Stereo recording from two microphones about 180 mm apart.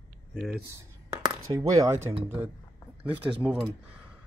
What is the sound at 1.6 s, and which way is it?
Speech, 20° right (ahead or behind).